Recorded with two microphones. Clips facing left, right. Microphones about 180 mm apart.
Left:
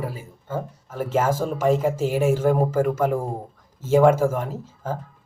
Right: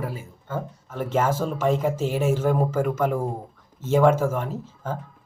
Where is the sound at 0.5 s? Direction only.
5° left (ahead or behind).